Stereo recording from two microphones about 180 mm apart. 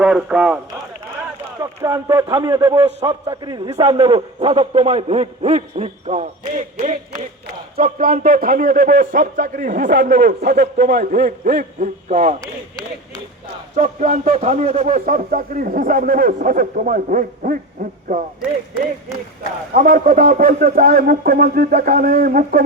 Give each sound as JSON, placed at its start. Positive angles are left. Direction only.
{"t": 0.0, "sound": "a man's voice", "side_deg": -5}
{"t": 1.6, "sound": "a man's voice", "side_deg": -20}
{"t": 3.0, "sound": "a man's voice", "side_deg": -30}
{"t": 9.9, "sound": "a man's voice", "side_deg": -70}
{"t": 13.8, "sound": "speech", "side_deg": -45}
{"t": 19.7, "sound": "speech", "side_deg": -50}